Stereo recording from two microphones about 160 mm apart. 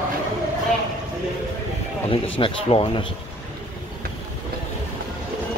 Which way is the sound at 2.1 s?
35° left (ahead or behind).